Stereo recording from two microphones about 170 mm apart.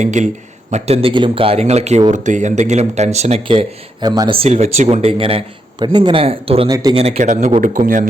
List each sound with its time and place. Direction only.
0.0 s speech: 45° right (ahead or behind)
6.7 s speech: 20° right (ahead or behind)
6.9 s speech: 35° right (ahead or behind)